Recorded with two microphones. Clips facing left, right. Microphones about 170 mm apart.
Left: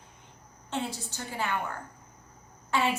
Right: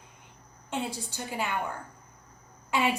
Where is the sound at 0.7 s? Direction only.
15° right (ahead or behind).